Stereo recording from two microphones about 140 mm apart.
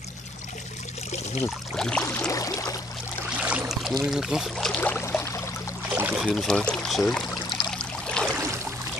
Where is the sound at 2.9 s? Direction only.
5° right (ahead or behind).